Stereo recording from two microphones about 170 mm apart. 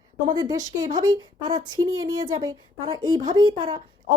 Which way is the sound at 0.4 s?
20° right (ahead or behind).